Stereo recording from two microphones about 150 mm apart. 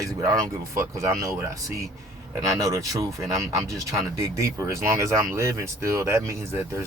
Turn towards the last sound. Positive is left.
turn(degrees=-20)  # may be behind; listen again after turning